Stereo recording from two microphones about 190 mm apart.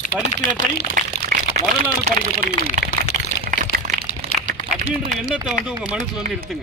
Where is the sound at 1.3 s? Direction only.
45° right (ahead or behind).